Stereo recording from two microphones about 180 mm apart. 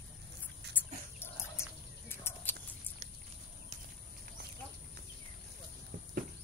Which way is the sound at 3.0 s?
40° right (ahead or behind).